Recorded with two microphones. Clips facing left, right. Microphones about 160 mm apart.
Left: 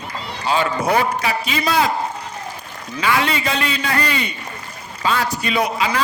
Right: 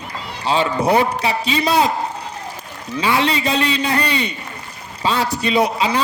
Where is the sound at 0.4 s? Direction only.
30° right (ahead or behind).